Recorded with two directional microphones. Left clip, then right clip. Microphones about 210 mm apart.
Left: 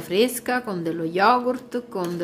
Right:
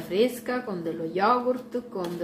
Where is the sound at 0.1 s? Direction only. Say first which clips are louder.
Left 4 dB; 55° left (ahead or behind).